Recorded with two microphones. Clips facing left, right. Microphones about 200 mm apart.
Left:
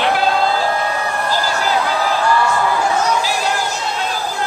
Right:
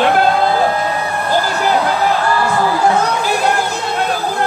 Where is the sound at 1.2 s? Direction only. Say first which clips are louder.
Right 5 dB; 60° right (ahead or behind).